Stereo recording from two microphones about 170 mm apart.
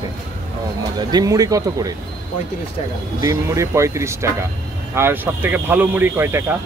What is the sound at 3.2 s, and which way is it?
Speech, 20° right (ahead or behind).